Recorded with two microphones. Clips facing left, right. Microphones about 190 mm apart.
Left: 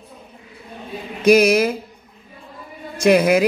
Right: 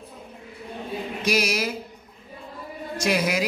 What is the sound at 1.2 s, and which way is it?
Speech, 55° left (ahead or behind).